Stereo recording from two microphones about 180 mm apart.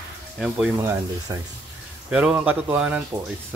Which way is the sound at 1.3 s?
20° right (ahead or behind).